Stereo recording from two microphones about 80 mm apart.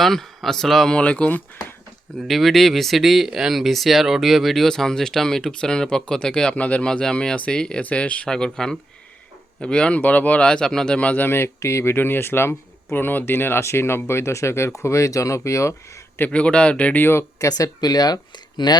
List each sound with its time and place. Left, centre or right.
0.0 s speech: centre
2.2 s speech: centre; by 15.7 s left
16.1 s speech: centre
17.4 s speech: left